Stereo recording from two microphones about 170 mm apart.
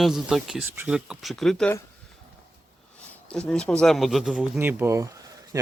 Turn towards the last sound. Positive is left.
turn(degrees=-20)  # may be behind; listen again after turning